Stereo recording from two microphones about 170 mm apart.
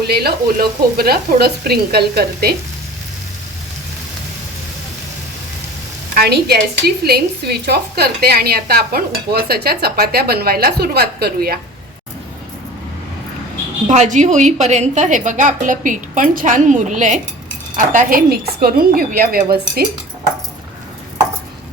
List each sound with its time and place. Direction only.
0.1 s a woman's voice: 65° right (ahead or behind)
6.1 s a woman's voice: 70° right (ahead or behind)
13.8 s a woman's voice: 45° right (ahead or behind); by 19.8 s 60° right (ahead or behind)